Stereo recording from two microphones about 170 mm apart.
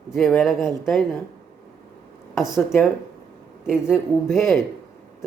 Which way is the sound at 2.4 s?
5° right (ahead or behind).